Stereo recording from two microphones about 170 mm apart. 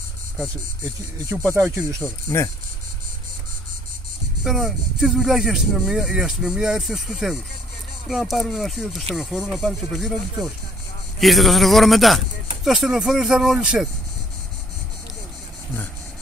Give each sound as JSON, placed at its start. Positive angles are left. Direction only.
{"t": 1.3, "sound": "speech", "side_deg": -10}
{"t": 2.2, "sound": "speech", "side_deg": 20}
{"t": 4.5, "sound": "speech", "side_deg": 0}